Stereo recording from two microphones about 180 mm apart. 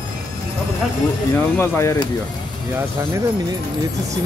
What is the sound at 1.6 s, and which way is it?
Speech, 15° left (ahead or behind).